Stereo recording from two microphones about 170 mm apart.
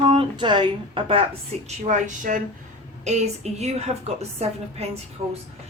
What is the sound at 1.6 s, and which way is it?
A woman's voice, 45° right (ahead or behind).